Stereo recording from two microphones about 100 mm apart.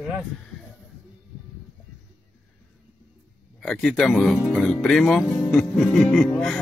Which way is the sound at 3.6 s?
5° left (ahead or behind).